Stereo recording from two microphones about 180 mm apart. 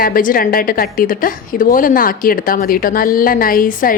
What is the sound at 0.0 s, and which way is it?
A woman's voice, 50° left (ahead or behind).